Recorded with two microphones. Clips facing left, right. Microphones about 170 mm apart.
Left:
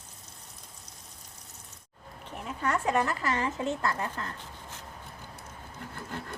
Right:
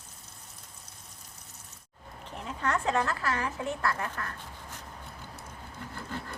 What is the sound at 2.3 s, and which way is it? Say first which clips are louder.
Speech: left 1 dB; 5° left (ahead or behind).